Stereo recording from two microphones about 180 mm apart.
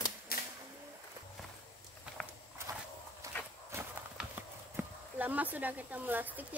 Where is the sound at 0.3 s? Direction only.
60° left (ahead or behind).